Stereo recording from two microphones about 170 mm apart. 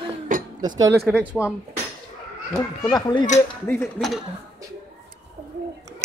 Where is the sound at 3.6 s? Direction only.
10° left (ahead or behind).